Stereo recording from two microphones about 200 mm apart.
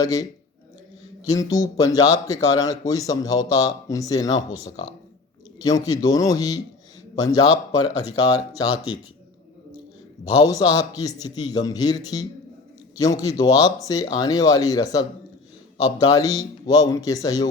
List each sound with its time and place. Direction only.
0.0 s speech: 15° left (ahead or behind)
1.3 s speech: 15° left (ahead or behind)
10.4 s speech: 20° left (ahead or behind)